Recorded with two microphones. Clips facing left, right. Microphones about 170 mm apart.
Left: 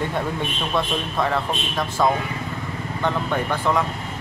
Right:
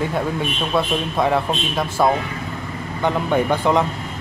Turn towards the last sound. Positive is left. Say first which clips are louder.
# right 5 dB
turn(degrees=-15)  # may be behind; listen again after turning